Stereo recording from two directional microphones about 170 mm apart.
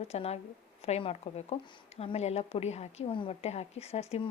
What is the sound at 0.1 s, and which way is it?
Speech, 35° left (ahead or behind).